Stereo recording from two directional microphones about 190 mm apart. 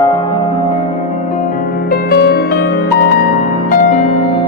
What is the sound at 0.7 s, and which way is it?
Music, 35° left (ahead or behind).